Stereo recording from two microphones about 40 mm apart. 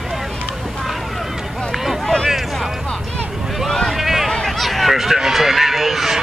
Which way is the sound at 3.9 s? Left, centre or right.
Centre.